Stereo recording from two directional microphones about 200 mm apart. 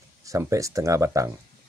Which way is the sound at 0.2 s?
15° right (ahead or behind).